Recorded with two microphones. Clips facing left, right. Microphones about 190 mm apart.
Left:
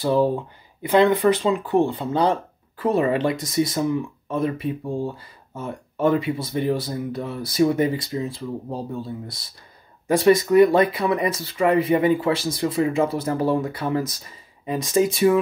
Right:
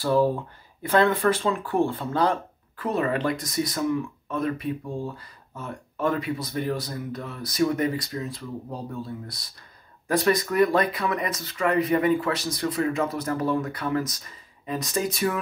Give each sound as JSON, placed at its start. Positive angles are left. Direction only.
{"t": 0.0, "sound": "speech", "side_deg": 20}